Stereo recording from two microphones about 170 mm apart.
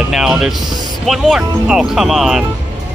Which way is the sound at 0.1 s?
Centre (ahead or behind).